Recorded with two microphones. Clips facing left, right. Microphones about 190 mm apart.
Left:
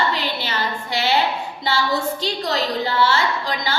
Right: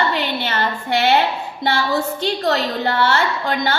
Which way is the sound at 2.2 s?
60° right (ahead or behind).